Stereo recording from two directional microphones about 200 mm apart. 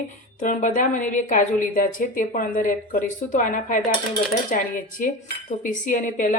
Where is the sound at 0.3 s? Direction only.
40° left (ahead or behind).